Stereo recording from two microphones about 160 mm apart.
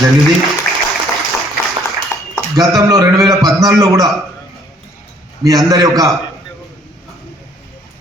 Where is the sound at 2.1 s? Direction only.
20° left (ahead or behind).